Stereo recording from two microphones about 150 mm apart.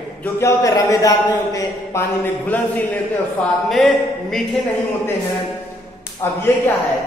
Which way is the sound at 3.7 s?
Centre (ahead or behind).